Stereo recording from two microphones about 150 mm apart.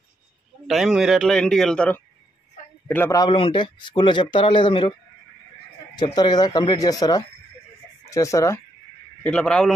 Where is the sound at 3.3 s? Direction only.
35° left (ahead or behind).